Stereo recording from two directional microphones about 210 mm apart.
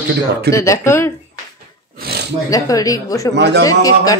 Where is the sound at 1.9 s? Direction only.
50° right (ahead or behind).